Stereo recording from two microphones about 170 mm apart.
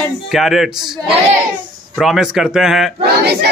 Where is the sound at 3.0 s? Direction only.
70° right (ahead or behind).